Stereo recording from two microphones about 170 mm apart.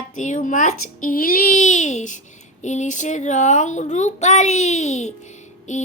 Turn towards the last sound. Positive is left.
turn(degrees=45)  # may be behind; listen again after turning